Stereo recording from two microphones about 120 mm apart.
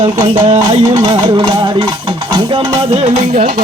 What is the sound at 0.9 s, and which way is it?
Speech, 40° right (ahead or behind).